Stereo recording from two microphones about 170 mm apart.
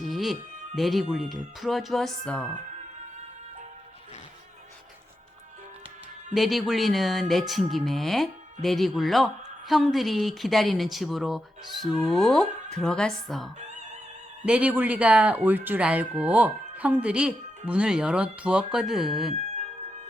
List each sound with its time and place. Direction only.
0.0 s music: centre (ahead or behind)
0.8 s a woman's voice: centre (ahead or behind)
6.3 s a woman's voice: centre (ahead or behind)
13.6 s music: 45° right (ahead or behind)
14.4 s speech: 5° right (ahead or behind)